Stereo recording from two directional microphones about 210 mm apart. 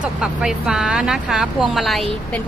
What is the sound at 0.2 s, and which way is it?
Speech, 5° right (ahead or behind).